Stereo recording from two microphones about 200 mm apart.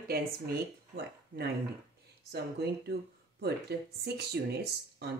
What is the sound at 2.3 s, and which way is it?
Speech, 55° right (ahead or behind).